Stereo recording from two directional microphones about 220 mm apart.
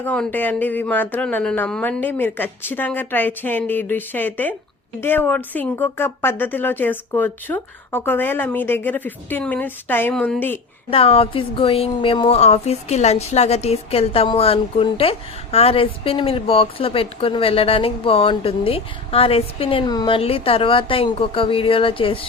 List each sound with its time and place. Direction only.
0.0 s speech: 5° left (ahead or behind)
10.9 s speech: 25° left (ahead or behind)